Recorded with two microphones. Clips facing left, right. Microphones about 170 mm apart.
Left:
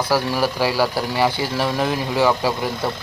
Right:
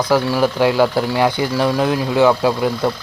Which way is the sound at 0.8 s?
20° right (ahead or behind).